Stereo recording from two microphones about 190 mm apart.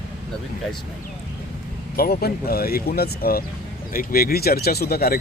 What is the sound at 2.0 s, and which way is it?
Speech, 55° left (ahead or behind).